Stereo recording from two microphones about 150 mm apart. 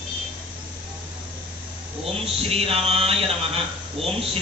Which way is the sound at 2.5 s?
40° right (ahead or behind).